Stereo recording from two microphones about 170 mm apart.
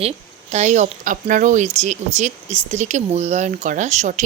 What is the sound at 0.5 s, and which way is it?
Speech, 45° right (ahead or behind).